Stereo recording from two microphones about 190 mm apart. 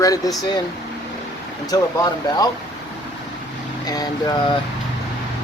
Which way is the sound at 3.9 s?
20° left (ahead or behind).